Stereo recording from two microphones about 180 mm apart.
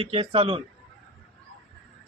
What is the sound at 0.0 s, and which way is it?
Speech, 30° right (ahead or behind).